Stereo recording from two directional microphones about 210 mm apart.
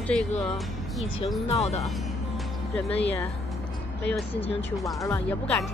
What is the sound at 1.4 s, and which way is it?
Speech, 30° left (ahead or behind).